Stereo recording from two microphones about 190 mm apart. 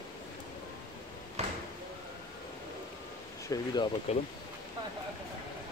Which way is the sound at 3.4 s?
20° left (ahead or behind).